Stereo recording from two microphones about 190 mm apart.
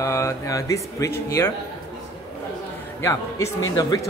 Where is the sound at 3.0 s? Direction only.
15° left (ahead or behind).